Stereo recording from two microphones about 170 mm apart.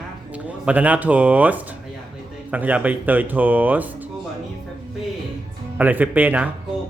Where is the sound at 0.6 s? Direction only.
10° right (ahead or behind).